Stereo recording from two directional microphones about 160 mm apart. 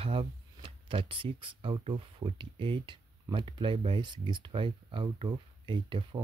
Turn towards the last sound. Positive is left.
turn(degrees=-30)  # may be behind; listen again after turning